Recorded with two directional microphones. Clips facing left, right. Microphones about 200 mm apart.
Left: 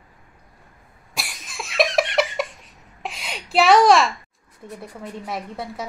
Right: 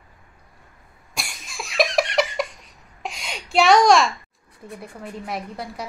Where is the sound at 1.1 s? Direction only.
Centre (ahead or behind).